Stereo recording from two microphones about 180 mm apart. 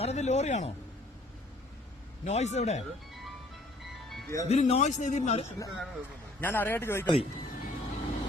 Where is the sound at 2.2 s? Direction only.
40° left (ahead or behind).